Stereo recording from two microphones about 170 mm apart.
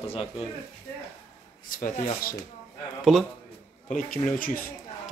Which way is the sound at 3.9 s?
50° left (ahead or behind).